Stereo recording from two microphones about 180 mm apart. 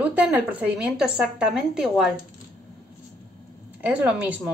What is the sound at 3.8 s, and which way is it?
Speech, 10° right (ahead or behind).